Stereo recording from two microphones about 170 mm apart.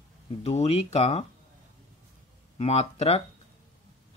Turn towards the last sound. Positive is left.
turn(degrees=40)  # may be behind; listen again after turning